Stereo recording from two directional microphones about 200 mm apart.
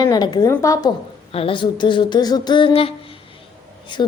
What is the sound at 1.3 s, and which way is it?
A woman's voice, 30° left (ahead or behind).